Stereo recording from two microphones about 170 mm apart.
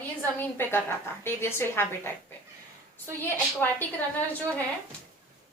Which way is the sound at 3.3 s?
10° left (ahead or behind).